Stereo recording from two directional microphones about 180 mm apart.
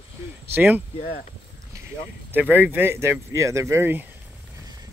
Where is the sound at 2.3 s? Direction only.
10° right (ahead or behind).